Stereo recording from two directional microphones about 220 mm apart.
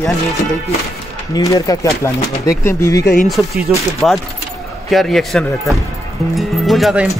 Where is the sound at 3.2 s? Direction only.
Centre (ahead or behind).